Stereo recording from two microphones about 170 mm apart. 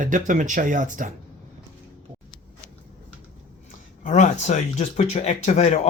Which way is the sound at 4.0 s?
45° left (ahead or behind).